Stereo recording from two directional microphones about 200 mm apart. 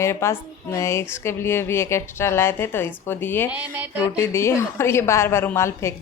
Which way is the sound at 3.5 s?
10° right (ahead or behind).